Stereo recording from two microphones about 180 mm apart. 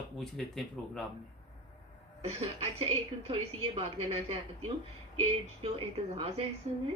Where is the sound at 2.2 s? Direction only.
35° right (ahead or behind).